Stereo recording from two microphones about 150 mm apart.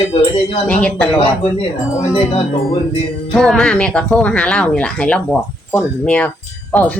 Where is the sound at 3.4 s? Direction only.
5° left (ahead or behind).